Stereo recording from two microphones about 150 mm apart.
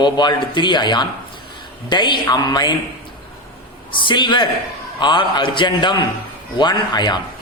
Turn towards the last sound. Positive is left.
turn(degrees=30)  # may be behind; listen again after turning